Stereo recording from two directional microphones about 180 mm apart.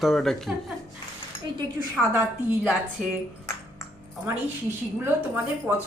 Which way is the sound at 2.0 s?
Centre (ahead or behind).